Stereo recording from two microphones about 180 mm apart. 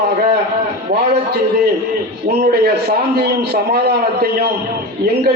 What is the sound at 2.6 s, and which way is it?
Speech, 60° right (ahead or behind).